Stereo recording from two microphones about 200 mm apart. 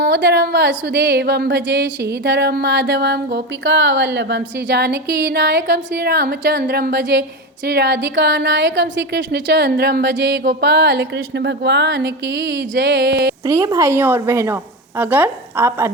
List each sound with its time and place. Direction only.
0.0 s a woman's voice: 55° right (ahead or behind)
13.4 s a woman's voice: 15° right (ahead or behind)